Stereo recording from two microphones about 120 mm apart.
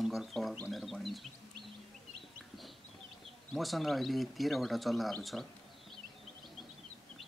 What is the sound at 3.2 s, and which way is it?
Speech, centre (ahead or behind).